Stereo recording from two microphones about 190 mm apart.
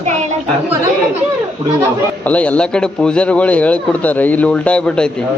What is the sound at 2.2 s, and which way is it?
A man's voice, 5° left (ahead or behind).